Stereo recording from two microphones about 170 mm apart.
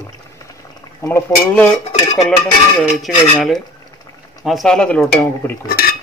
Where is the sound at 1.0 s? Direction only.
10° left (ahead or behind).